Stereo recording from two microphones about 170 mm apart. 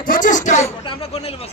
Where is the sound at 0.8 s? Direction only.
35° left (ahead or behind).